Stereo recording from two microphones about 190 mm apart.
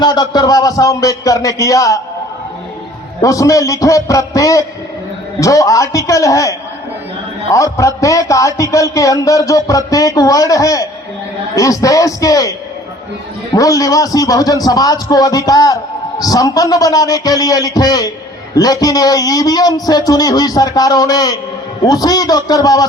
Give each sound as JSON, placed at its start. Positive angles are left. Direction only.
{"t": 0.0, "sound": "a man's voice", "side_deg": 20}
{"t": 3.2, "sound": "a man's voice", "side_deg": 15}